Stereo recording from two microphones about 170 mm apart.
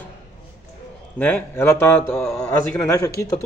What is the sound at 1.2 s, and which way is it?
A man's voice, 10° left (ahead or behind).